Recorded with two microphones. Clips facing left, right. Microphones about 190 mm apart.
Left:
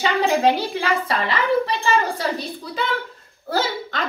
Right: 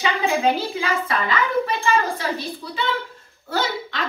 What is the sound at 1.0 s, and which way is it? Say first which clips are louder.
Speech: even; 35° left (ahead or behind).